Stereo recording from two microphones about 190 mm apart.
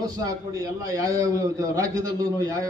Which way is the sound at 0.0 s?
20° right (ahead or behind).